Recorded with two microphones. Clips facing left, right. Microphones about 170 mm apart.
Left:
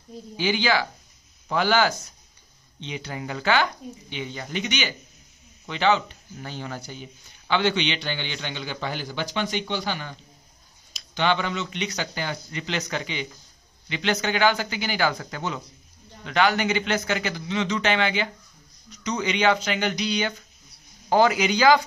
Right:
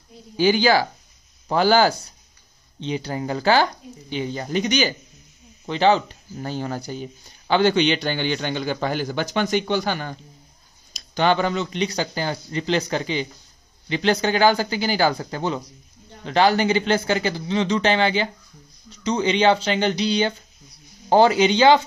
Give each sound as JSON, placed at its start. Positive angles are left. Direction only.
{"t": 0.4, "sound": "a man's voice", "side_deg": -40}